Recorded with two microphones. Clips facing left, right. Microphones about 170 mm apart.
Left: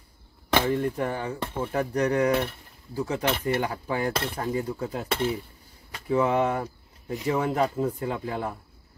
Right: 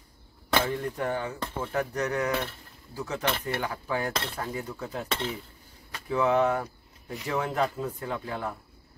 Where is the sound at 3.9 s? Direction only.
10° left (ahead or behind).